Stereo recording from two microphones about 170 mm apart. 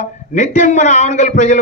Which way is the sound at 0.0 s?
45° left (ahead or behind).